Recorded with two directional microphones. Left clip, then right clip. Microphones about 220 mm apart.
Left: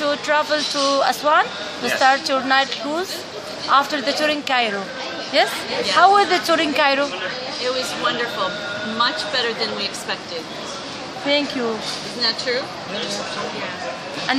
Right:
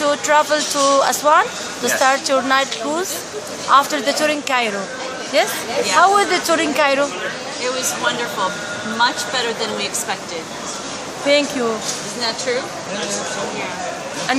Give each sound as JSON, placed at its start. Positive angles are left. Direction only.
{"t": 0.0, "sound": "a woman's voice", "side_deg": -10}
{"t": 8.9, "sound": "speech", "side_deg": -15}
{"t": 11.3, "sound": "a woman's voice", "side_deg": 0}
{"t": 12.2, "sound": "speech", "side_deg": -20}